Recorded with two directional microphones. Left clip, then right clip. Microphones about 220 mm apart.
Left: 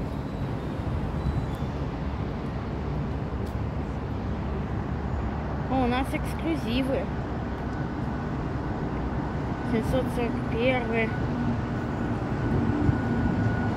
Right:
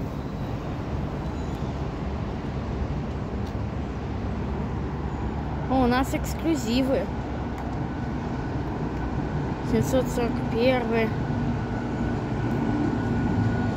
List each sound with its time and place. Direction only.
5.8 s speech: 20° right (ahead or behind)
9.8 s speech: 20° right (ahead or behind)